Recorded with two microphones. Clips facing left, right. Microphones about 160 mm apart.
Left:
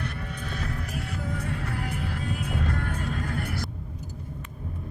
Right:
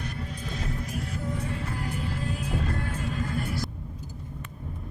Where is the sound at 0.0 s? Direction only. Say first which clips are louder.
Left 1 dB; 60° left (ahead or behind).